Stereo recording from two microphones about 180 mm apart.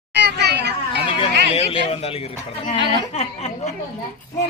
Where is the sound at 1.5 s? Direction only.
30° left (ahead or behind).